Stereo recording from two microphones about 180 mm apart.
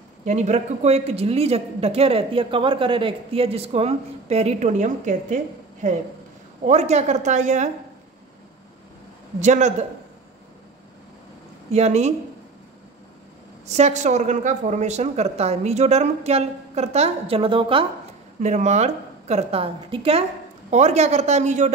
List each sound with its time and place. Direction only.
0.2 s a woman's voice: 40° right (ahead or behind)
9.4 s a woman's voice: 40° right (ahead or behind)
11.7 s a woman's voice: 35° right (ahead or behind)
13.7 s a woman's voice: 40° right (ahead or behind)
18.4 s a woman's voice: 40° right (ahead or behind)